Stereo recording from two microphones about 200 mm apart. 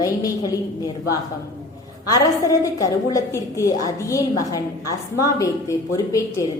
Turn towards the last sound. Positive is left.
turn(degrees=15)  # may be behind; listen again after turning